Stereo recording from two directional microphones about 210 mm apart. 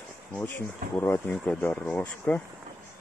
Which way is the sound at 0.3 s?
10° left (ahead or behind).